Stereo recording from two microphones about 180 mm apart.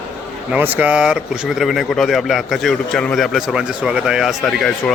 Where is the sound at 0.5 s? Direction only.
10° right (ahead or behind).